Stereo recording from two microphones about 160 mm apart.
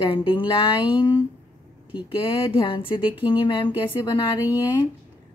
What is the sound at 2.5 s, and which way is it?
Speech, 30° left (ahead or behind).